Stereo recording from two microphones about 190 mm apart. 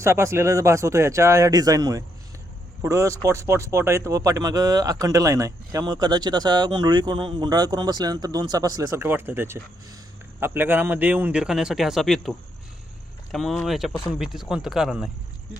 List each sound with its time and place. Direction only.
0.0 s a man's voice: 15° right (ahead or behind)